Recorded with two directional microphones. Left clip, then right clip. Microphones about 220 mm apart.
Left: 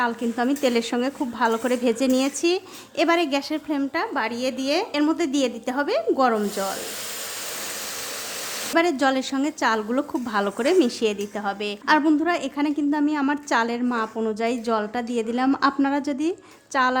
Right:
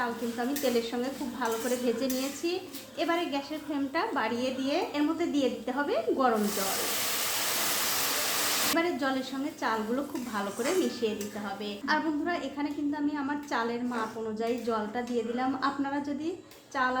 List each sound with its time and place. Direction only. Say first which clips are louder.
0.0 s a woman's voice: left 8 dB; 45° left (ahead or behind)
8.7 s a woman's voice: left 8 dB; 40° left (ahead or behind)